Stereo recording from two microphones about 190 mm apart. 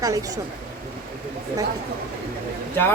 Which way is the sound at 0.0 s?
15° right (ahead or behind).